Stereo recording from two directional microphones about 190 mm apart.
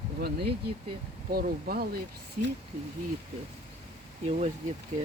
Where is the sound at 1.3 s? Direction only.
50° right (ahead or behind).